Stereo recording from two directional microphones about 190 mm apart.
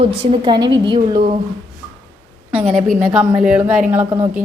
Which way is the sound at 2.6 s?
30° right (ahead or behind).